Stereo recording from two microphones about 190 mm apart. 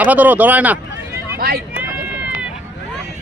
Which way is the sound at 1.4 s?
55° right (ahead or behind).